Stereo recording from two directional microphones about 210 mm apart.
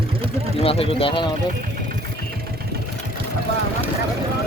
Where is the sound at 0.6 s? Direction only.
25° left (ahead or behind).